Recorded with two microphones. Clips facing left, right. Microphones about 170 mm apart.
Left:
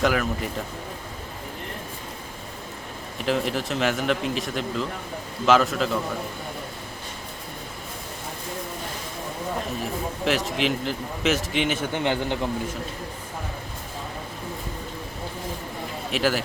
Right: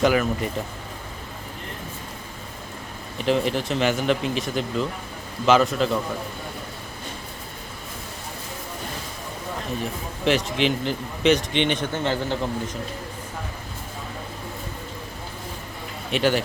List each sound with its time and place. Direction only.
0.0 s a man's voice: centre (ahead or behind)
3.2 s a man's voice: centre (ahead or behind)
9.8 s a man's voice: centre (ahead or behind)
11.9 s a man's voice: 15° left (ahead or behind)
16.1 s a man's voice: centre (ahead or behind)